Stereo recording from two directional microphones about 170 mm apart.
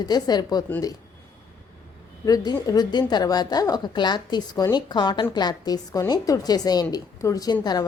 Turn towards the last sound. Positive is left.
turn(degrees=25)  # may be behind; listen again after turning